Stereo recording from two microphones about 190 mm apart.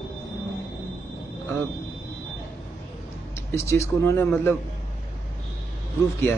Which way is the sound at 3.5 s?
15° left (ahead or behind).